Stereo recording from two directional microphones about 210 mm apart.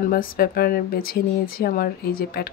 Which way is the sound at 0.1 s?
45° left (ahead or behind).